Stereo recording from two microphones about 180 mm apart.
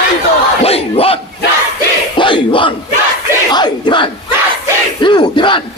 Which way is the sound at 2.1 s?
25° left (ahead or behind).